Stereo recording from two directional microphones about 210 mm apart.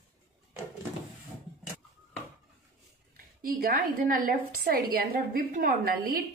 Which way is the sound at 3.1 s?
45° right (ahead or behind).